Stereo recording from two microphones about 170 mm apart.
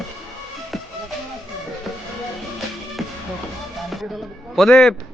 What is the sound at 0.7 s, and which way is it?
Music, centre (ahead or behind).